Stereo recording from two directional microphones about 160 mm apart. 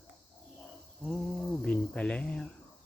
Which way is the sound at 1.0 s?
Centre (ahead or behind).